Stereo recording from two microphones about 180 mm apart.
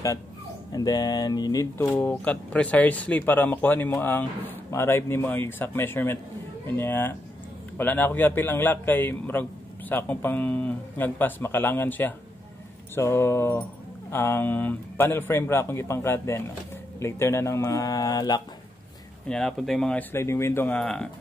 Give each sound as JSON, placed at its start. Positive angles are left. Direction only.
{"t": 0.7, "sound": "speech", "side_deg": 20}
{"t": 19.2, "sound": "speech", "side_deg": 5}